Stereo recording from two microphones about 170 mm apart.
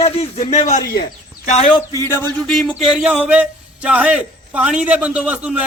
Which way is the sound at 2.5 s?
Centre (ahead or behind).